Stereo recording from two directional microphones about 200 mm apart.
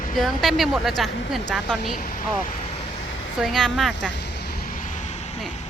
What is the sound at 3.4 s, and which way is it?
Speech, centre (ahead or behind).